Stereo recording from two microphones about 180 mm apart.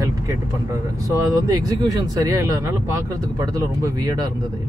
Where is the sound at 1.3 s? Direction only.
20° right (ahead or behind).